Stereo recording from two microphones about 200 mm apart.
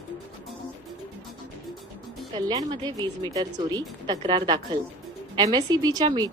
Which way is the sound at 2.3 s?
20° right (ahead or behind).